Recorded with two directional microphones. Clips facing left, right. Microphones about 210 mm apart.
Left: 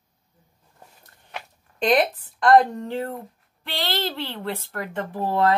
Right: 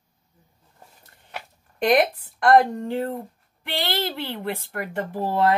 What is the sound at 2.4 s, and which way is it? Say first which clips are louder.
Speech: even; 10° right (ahead or behind).